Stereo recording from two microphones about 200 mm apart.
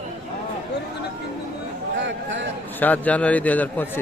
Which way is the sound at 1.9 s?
65° right (ahead or behind).